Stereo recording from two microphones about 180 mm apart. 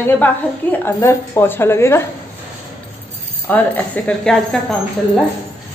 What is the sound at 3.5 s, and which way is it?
A woman's voice, 10° left (ahead or behind).